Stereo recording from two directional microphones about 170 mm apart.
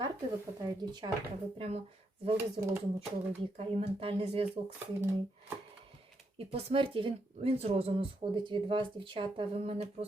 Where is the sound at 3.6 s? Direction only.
35° right (ahead or behind).